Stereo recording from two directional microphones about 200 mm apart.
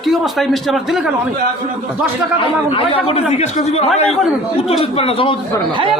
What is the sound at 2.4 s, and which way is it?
A man's voice, 30° left (ahead or behind).